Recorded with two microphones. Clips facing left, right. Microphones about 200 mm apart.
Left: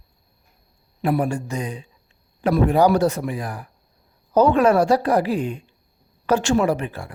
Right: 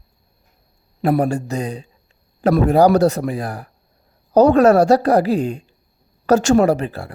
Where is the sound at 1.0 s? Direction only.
40° right (ahead or behind).